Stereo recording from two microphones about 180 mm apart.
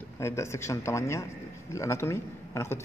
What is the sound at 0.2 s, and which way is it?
A man's voice, 15° left (ahead or behind).